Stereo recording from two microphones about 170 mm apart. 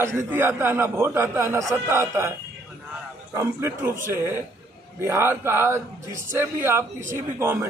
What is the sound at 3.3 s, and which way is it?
A man's voice, 15° right (ahead or behind).